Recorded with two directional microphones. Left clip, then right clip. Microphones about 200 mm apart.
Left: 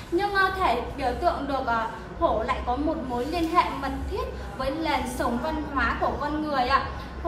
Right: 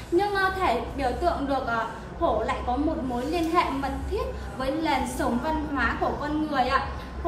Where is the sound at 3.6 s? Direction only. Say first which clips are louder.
Left 1 dB; 30° left (ahead or behind).